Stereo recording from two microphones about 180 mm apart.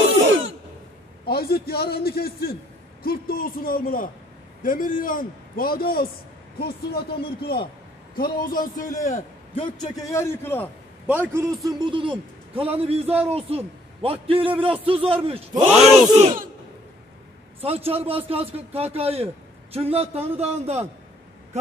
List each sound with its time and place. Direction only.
0.2 s cough: 90° right
1.2 s a man's voice: 60° left (ahead or behind)
9.6 s a man's voice: 25° left (ahead or behind)
10.1 s a man's voice: 15° left (ahead or behind)
11.1 s a man's voice: 10° right (ahead or behind)
11.9 s a man's voice: 30° right (ahead or behind)
15.7 s battle cry: 5° right (ahead or behind)
17.6 s a man's voice: 35° right (ahead or behind)